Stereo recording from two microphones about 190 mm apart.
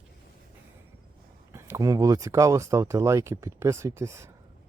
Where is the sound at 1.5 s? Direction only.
15° right (ahead or behind).